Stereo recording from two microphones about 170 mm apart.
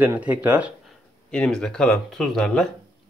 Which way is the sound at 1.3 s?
5° left (ahead or behind).